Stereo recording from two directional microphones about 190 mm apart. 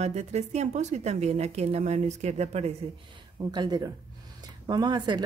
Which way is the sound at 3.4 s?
20° right (ahead or behind).